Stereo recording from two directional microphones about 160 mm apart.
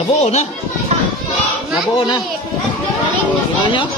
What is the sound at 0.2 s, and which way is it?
Speech, 40° left (ahead or behind).